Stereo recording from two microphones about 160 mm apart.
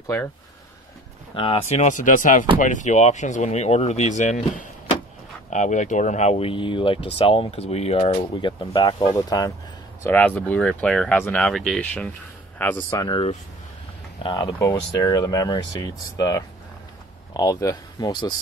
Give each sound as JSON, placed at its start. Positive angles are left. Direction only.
{"t": 0.0, "sound": "speech", "side_deg": 15}
{"t": 1.3, "sound": "speech", "side_deg": 35}
{"t": 10.0, "sound": "speech", "side_deg": 10}
{"t": 13.0, "sound": "speech", "side_deg": 30}